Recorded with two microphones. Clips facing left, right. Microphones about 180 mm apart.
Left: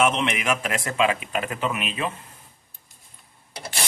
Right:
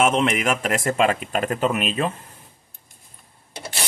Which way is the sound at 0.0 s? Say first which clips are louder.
Right 3 dB; 45° right (ahead or behind).